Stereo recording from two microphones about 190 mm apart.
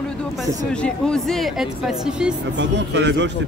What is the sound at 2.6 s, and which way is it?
Speech, 65° right (ahead or behind).